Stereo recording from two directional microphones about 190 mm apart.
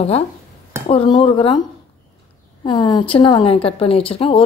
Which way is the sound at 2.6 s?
25° left (ahead or behind).